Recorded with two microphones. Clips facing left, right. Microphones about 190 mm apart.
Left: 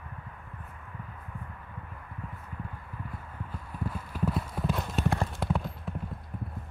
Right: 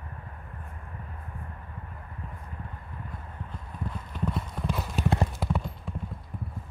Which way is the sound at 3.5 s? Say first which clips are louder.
Left 2 dB; 5° left (ahead or behind).